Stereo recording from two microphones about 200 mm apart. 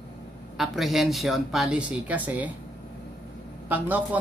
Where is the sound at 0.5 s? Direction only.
Centre (ahead or behind).